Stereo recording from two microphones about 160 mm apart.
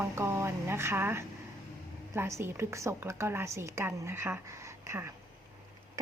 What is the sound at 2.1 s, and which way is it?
A woman's voice, 15° right (ahead or behind).